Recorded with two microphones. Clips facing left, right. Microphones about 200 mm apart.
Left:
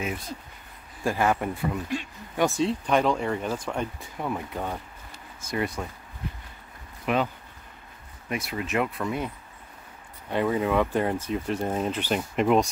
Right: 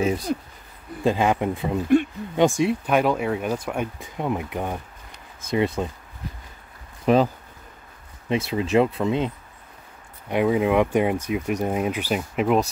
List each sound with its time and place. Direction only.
0.0 s speech: 35° right (ahead or behind)
1.0 s speech: 20° right (ahead or behind)
7.1 s speech: 35° right (ahead or behind)
8.3 s speech: 25° right (ahead or behind)
10.3 s speech: 15° right (ahead or behind)